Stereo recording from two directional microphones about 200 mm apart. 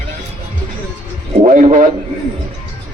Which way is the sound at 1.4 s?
40° right (ahead or behind).